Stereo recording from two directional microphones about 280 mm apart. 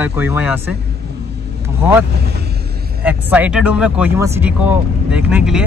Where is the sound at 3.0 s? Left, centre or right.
Centre.